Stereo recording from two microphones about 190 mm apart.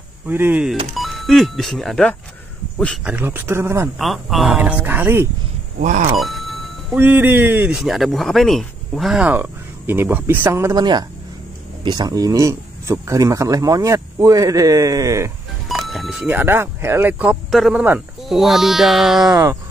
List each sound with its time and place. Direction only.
0.3 s speech: 10° right (ahead or behind)
4.0 s speech: centre (ahead or behind)
5.8 s speech: 40° right (ahead or behind)
6.1 s music: centre (ahead or behind)
7.0 s speech: 10° right (ahead or behind)
15.7 s speech: centre (ahead or behind)
19.3 s speech: 20° right (ahead or behind)